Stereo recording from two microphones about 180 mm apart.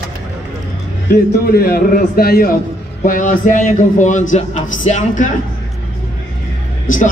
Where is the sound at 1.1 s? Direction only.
60° left (ahead or behind).